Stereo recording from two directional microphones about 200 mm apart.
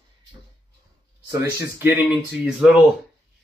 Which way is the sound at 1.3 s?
10° right (ahead or behind).